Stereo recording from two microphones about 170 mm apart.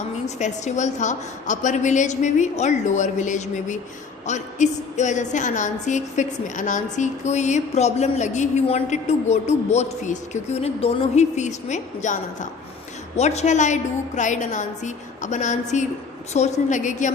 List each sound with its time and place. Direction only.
0.3 s a woman's voice: 45° left (ahead or behind)